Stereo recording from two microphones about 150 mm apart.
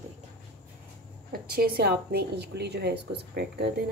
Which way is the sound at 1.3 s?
90° right.